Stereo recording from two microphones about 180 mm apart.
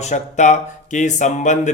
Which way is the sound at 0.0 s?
40° left (ahead or behind).